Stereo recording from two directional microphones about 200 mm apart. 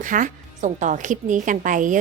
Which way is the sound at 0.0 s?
40° right (ahead or behind).